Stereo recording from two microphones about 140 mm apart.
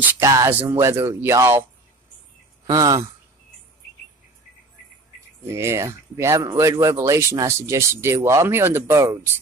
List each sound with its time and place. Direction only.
0.0 s speech: 20° right (ahead or behind)
5.5 s speech: 20° right (ahead or behind)